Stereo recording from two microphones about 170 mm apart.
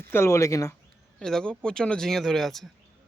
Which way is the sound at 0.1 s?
15° left (ahead or behind).